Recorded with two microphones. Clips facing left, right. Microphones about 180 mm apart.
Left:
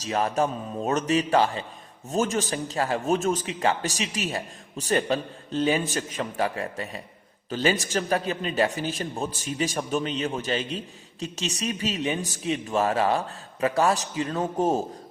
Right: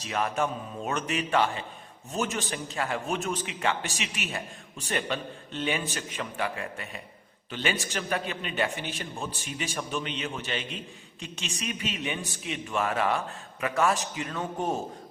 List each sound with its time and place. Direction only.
0.1 s a man's voice: 35° left (ahead or behind)